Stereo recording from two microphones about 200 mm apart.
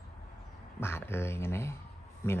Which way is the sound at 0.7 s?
10° left (ahead or behind).